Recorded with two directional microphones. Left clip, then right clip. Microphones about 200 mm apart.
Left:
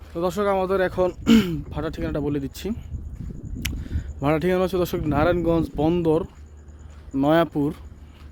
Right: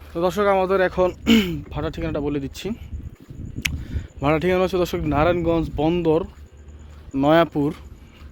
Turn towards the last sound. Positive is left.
turn(degrees=15)  # may be behind; listen again after turning